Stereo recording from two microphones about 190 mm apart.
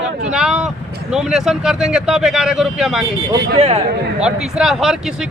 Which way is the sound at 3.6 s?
35° right (ahead or behind).